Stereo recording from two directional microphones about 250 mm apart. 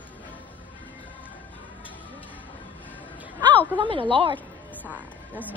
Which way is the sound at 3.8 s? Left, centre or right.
Right.